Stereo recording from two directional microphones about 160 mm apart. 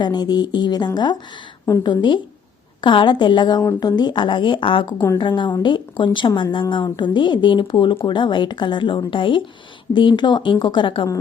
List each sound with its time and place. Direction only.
0.0 s speech: 25° left (ahead or behind)